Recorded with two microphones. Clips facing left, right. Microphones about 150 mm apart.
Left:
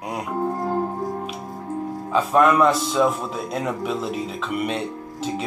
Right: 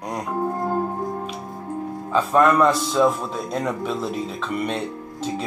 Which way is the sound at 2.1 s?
5° left (ahead or behind).